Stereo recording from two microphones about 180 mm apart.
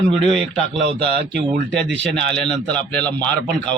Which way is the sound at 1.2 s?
65° right (ahead or behind).